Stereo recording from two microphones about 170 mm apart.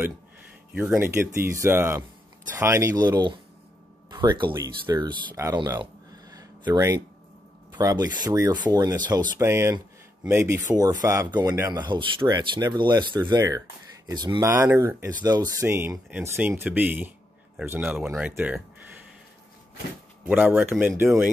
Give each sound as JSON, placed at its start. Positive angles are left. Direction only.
{"t": 0.7, "sound": "speech", "side_deg": -15}
{"t": 6.3, "sound": "a sound", "side_deg": -20}
{"t": 7.7, "sound": "speech", "side_deg": -20}
{"t": 20.2, "sound": "speech", "side_deg": -10}